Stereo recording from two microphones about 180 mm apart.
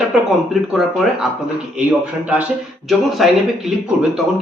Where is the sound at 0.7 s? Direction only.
Centre (ahead or behind).